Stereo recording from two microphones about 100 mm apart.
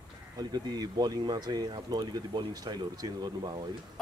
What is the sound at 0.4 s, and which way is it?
Speech, 40° right (ahead or behind).